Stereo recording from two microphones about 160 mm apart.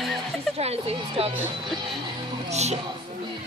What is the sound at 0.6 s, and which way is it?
Speech, 40° right (ahead or behind).